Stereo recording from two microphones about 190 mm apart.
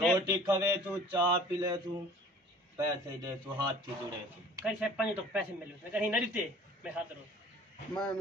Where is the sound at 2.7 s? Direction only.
15° right (ahead or behind).